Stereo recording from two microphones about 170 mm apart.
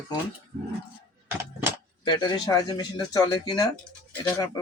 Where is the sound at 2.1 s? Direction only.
25° left (ahead or behind).